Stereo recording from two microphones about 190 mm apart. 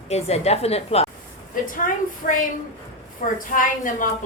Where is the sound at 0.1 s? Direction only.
35° left (ahead or behind).